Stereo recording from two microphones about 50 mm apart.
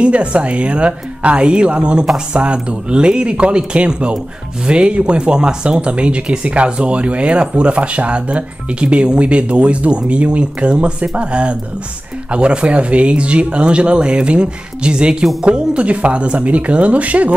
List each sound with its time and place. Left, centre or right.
0.0 s speech: right